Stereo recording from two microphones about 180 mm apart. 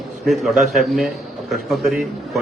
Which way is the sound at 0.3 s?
Centre (ahead or behind).